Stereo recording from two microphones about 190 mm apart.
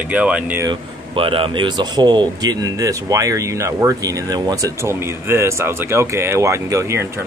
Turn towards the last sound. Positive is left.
turn(degrees=-15)  # may be behind; listen again after turning